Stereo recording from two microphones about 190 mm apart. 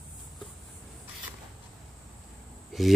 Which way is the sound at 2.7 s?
Centre (ahead or behind).